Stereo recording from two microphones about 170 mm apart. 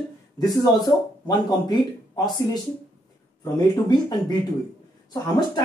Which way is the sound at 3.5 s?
25° left (ahead or behind).